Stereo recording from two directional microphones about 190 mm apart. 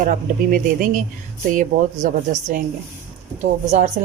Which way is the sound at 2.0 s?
45° right (ahead or behind).